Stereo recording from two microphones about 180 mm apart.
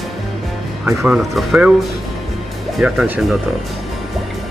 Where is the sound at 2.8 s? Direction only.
5° right (ahead or behind).